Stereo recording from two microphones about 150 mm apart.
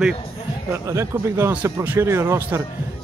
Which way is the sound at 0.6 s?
15° right (ahead or behind).